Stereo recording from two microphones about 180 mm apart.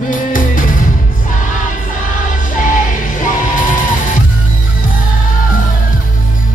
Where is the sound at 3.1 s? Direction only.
45° left (ahead or behind).